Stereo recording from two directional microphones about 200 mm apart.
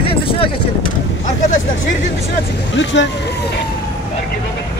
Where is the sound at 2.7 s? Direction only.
65° left (ahead or behind).